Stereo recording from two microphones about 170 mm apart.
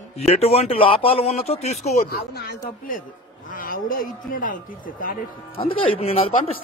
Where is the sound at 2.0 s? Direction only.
70° left (ahead or behind).